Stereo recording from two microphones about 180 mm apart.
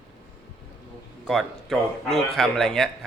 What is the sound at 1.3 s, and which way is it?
Speech, centre (ahead or behind).